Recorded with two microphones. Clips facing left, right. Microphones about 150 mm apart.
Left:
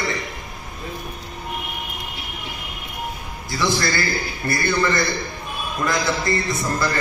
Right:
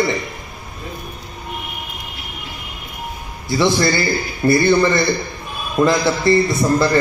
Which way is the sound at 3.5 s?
25° right (ahead or behind).